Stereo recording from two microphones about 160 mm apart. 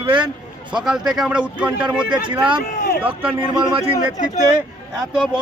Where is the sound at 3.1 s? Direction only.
10° right (ahead or behind).